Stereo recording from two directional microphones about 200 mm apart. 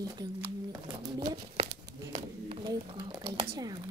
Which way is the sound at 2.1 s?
25° right (ahead or behind).